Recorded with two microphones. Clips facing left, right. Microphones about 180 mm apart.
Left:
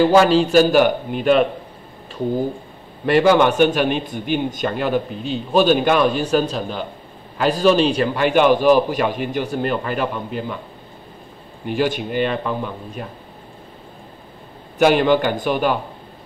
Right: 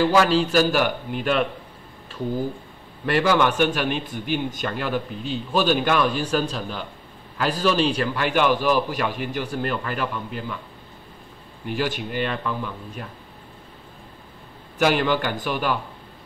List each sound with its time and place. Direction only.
0.0 s a man's voice: 25° left (ahead or behind)
11.6 s a man's voice: 20° left (ahead or behind)
14.8 s a man's voice: 20° left (ahead or behind)